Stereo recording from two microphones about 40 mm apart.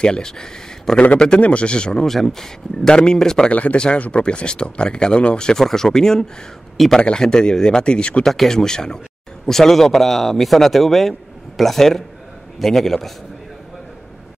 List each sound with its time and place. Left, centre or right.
0.0 s speech: centre
2.0 s speech: centre
3.4 s speech: left
3.7 s speech: left
8.3 s speech: centre